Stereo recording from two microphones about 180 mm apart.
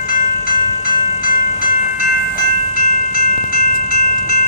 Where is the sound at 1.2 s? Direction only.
50° left (ahead or behind).